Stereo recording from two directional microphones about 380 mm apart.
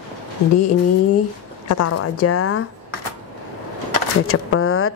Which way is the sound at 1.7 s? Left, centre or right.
Left.